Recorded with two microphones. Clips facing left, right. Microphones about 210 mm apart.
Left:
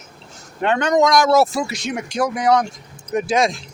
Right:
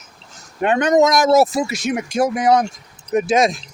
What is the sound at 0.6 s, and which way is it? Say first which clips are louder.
Speech: right 2 dB; 20° right (ahead or behind).